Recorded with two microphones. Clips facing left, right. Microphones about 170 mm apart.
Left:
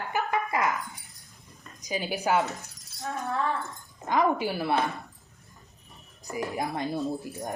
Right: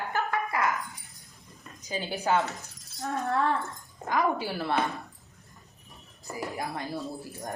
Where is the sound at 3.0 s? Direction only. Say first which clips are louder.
Right 2 dB; 70° right (ahead or behind).